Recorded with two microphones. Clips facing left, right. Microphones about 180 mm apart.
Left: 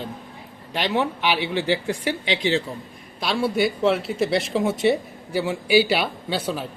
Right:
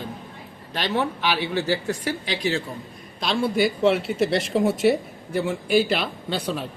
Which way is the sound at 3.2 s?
5° left (ahead or behind).